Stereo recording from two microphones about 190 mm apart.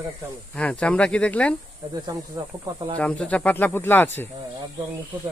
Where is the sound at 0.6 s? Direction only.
5° left (ahead or behind).